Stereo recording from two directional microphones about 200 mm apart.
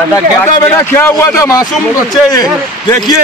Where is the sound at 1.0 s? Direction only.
10° left (ahead or behind).